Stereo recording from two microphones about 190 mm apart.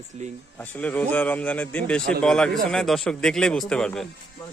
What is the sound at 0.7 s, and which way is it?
Speech, 5° left (ahead or behind).